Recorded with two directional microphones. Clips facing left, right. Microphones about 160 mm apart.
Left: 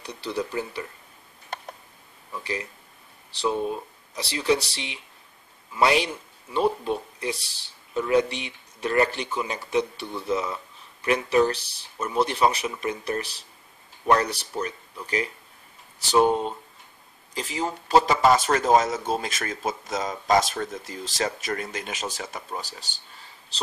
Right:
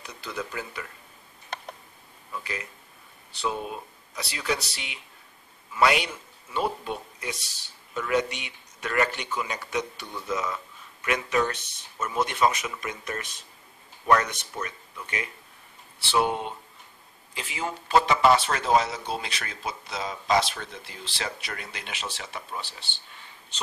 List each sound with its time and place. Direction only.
0.0 s speech: 30° left (ahead or behind)
2.4 s speech: 30° left (ahead or behind)
4.1 s speech: 30° left (ahead or behind)